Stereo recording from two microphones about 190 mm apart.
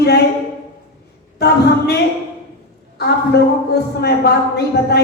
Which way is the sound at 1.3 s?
60° left (ahead or behind).